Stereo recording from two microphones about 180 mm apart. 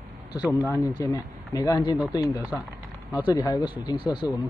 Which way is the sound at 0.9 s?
20° left (ahead or behind).